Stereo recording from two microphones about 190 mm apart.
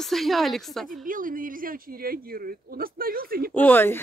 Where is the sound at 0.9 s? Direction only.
45° right (ahead or behind).